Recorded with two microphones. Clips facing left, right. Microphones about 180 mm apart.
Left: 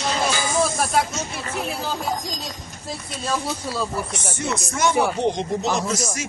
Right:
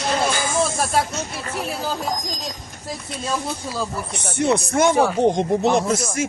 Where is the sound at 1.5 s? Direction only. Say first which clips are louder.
Even; 35° right (ahead or behind).